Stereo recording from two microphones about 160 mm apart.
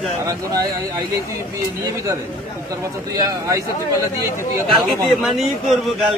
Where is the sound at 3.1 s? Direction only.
20° right (ahead or behind).